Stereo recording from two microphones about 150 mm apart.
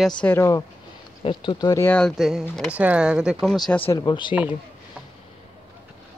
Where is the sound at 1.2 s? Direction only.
30° left (ahead or behind).